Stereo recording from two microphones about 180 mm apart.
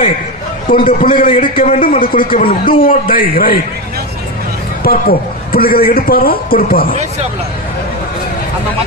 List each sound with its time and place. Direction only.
0.7 s a man's voice: 50° left (ahead or behind)
4.8 s a man's voice: 55° left (ahead or behind)